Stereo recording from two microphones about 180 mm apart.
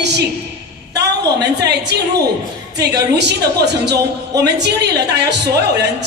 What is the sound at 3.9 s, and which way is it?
Speech, 20° right (ahead or behind).